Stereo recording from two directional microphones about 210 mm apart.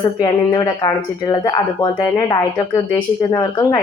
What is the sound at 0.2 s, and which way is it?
Speech, 20° left (ahead or behind).